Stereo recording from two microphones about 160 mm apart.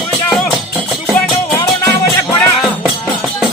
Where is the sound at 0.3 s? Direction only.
Centre (ahead or behind).